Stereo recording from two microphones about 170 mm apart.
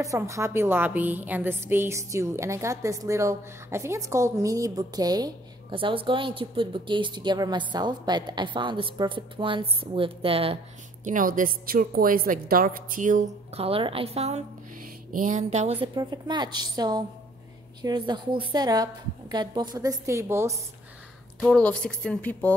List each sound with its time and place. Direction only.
0.0 s a woman's voice: 20° right (ahead or behind); by 10.6 s 35° right (ahead or behind)
11.1 s a woman's voice: 50° right (ahead or behind)
15.1 s a sound: 45° right (ahead or behind)
15.9 s a woman's voice: 25° right (ahead or behind)
21.4 s speech: 5° left (ahead or behind)